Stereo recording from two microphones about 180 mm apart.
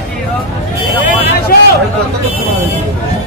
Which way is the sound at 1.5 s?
55° left (ahead or behind).